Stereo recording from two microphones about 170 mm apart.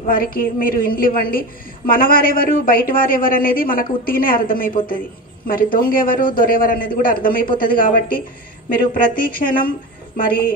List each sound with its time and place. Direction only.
0.0 s a woman's voice: 55° left (ahead or behind)